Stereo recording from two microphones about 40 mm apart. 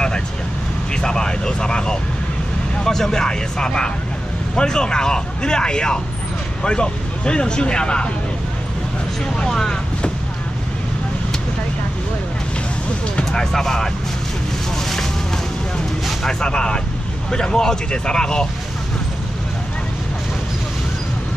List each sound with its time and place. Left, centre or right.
0.9 s speech: centre
9.2 s speech: centre
13.6 s speech: centre
14.9 s boat: centre
16.3 s speech: centre